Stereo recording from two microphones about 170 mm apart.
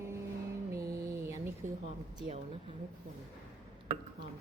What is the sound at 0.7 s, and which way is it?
Mantra, 20° right (ahead or behind).